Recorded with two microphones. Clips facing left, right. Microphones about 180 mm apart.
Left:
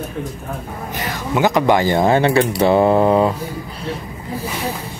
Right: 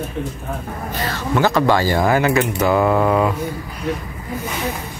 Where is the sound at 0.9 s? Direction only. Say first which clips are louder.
Right 1 dB; 15° left (ahead or behind); by 3.9 s 30° left (ahead or behind).